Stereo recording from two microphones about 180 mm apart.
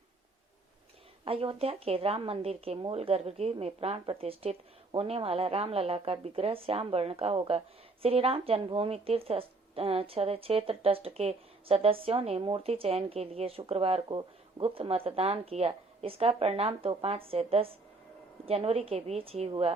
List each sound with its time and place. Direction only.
1.2 s speech: 30° right (ahead or behind)